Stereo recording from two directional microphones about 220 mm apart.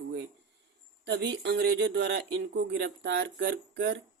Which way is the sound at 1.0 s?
50° right (ahead or behind).